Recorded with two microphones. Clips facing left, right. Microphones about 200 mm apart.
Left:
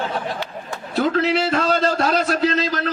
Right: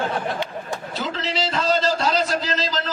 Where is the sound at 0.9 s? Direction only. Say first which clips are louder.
Left 10 dB; 55° left (ahead or behind).